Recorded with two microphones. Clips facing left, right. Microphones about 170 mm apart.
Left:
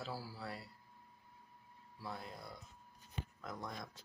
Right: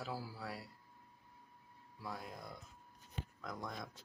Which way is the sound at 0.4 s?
5° right (ahead or behind).